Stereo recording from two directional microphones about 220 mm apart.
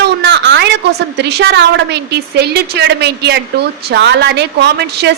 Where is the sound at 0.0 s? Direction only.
50° right (ahead or behind).